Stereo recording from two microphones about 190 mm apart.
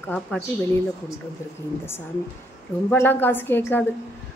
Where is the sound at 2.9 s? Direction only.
10° left (ahead or behind).